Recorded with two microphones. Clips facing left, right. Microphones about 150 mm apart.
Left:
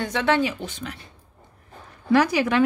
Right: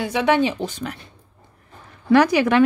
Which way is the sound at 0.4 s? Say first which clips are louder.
Right 4 dB; 25° right (ahead or behind).